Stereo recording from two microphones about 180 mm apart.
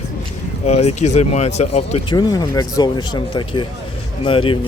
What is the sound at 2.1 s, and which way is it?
Speech, 20° left (ahead or behind).